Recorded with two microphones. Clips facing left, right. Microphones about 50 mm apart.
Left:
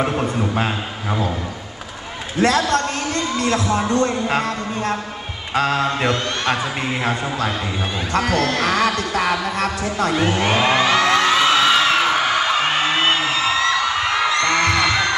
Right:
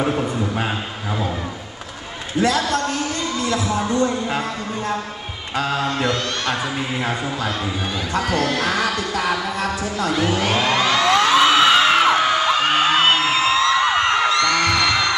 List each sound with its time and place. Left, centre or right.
2.4 s speech: left
3.9 s speech: left
5.9 s music: left
8.1 s speech: left
8.5 s music: left
9.6 s speech: left
10.1 s music: left
11.1 s a sound: centre
11.5 s a sound: centre
12.2 s whoop: centre
13.2 s a sound: right
14.3 s music: left
14.9 s music: centre